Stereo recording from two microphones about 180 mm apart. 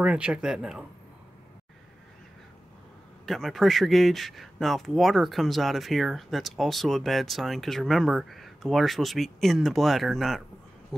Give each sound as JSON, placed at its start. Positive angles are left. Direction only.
{"t": 0.0, "sound": "speech", "side_deg": -5}
{"t": 3.3, "sound": "speech", "side_deg": 0}